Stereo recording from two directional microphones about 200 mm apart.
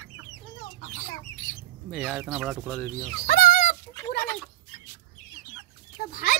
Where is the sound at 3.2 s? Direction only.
45° left (ahead or behind).